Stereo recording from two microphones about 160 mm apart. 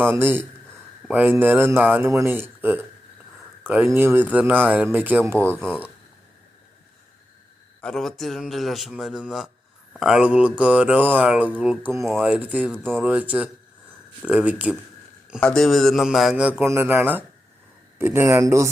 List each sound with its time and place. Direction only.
0.0 s speech: 15° right (ahead or behind)
7.8 s speech: 5° left (ahead or behind)
15.4 s speech: 5° left (ahead or behind)
16.6 s speech: 15° right (ahead or behind)